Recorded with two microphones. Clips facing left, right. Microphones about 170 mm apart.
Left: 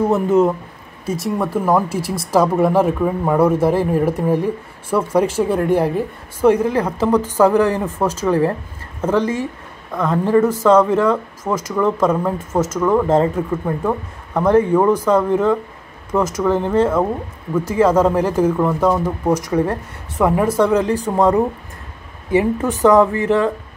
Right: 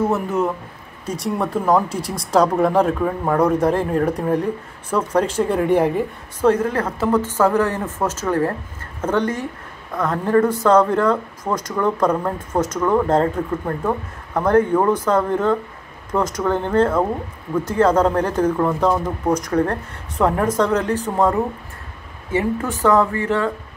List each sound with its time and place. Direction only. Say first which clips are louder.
1.0 s speech: left 2 dB; 5° left (ahead or behind); by 23.5 s 20° left (ahead or behind)